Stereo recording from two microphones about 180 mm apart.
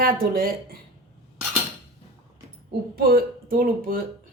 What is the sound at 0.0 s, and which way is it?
Speech, 55° right (ahead or behind).